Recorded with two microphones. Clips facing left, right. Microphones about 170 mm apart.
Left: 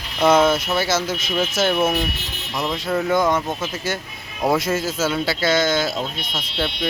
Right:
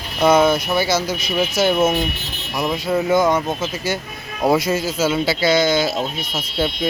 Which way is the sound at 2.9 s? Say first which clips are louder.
Right 2 dB; centre (ahead or behind).